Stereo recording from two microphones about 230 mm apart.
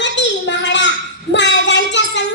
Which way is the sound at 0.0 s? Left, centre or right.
Left.